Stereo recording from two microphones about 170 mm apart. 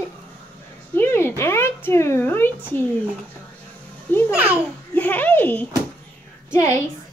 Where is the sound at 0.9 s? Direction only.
15° left (ahead or behind).